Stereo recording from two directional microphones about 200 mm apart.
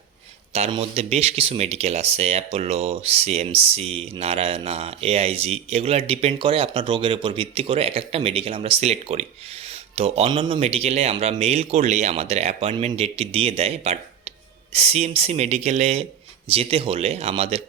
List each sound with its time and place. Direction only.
0.5 s speech: 30° right (ahead or behind)